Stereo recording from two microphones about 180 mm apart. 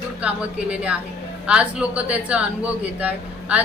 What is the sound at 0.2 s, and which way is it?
Speech, 5° right (ahead or behind).